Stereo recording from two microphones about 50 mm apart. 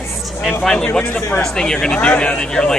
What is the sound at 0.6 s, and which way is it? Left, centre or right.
Speech, centre.